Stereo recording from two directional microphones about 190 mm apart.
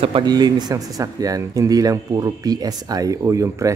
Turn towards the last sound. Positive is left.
turn(degrees=-15)  # may be behind; listen again after turning